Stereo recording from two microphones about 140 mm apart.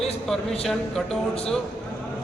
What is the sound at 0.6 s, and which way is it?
Speech, 5° left (ahead or behind).